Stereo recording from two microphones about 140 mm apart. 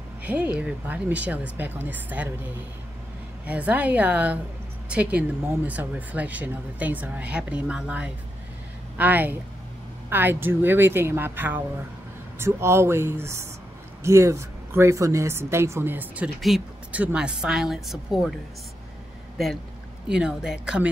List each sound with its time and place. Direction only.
0.2 s speech: 10° right (ahead or behind)
3.4 s a woman's voice: 10° right (ahead or behind)
16.3 s a woman's voice: centre (ahead or behind)
19.3 s a woman's voice: centre (ahead or behind)